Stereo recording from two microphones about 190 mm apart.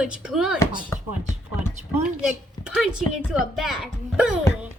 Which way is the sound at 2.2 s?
Centre (ahead or behind).